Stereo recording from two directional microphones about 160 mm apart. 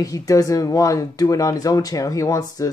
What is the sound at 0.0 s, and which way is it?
Speech, 20° left (ahead or behind).